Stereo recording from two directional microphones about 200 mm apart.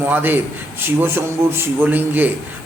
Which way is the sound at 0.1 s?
10° right (ahead or behind).